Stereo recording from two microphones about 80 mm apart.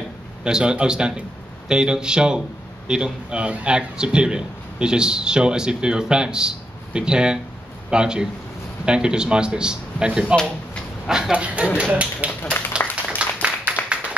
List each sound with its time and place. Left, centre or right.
0.4 s a man's voice: centre
10.3 s speech: centre
11.1 s a man's voice: centre
12.7 s a sound: centre